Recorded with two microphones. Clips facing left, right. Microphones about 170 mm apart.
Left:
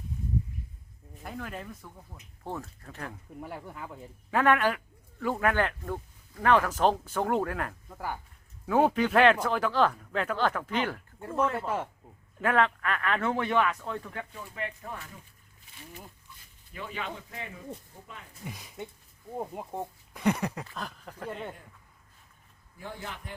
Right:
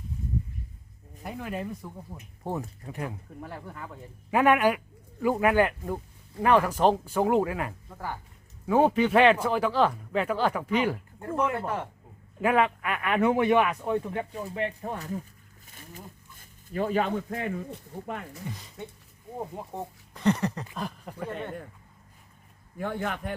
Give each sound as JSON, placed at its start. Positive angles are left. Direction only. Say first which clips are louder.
{"t": 1.2, "sound": "speech", "louder": "right 4 dB", "side_deg": -5}
{"t": 1.6, "sound": "a man's voice", "louder": "right 8 dB", "side_deg": -20}
{"t": 3.4, "sound": "speech", "louder": "even", "side_deg": 10}
{"t": 4.3, "sound": "a man's voice", "louder": "right 3 dB", "side_deg": -15}
{"t": 7.9, "sound": "speech", "louder": "left 1 dB", "side_deg": 10}
{"t": 8.6, "sound": "a man's voice", "louder": "right 2 dB", "side_deg": -5}
{"t": 14.3, "sound": "speech", "louder": "right 7 dB", "side_deg": -30}
{"t": 15.6, "sound": "zipper", "louder": "right 2 dB", "side_deg": -45}
{"t": 18.0, "sound": "a man's voice", "louder": "right 12 dB", "side_deg": -65}
{"t": 18.4, "sound": "speech", "louder": "right 2 dB", "side_deg": 10}
{"t": 20.7, "sound": "a man's voice", "louder": "right 4 dB", "side_deg": -10}
{"t": 22.8, "sound": "a man's voice", "louder": "right 10 dB", "side_deg": -65}